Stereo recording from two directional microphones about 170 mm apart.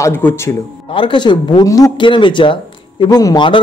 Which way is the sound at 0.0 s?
15° left (ahead or behind).